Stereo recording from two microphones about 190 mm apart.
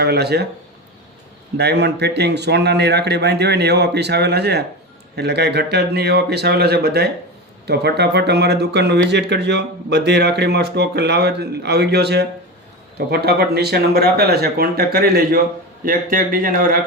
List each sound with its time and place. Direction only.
0.0 s speech: 55° right (ahead or behind)
1.5 s speech: 60° right (ahead or behind); by 16.7 s 45° right (ahead or behind)